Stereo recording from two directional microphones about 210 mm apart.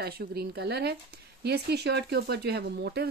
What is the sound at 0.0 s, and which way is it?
Speech, 50° right (ahead or behind).